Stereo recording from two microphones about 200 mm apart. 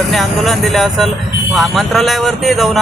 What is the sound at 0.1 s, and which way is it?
Speech, centre (ahead or behind).